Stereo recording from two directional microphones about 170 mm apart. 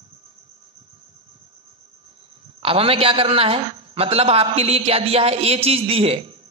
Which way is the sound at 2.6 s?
35° right (ahead or behind).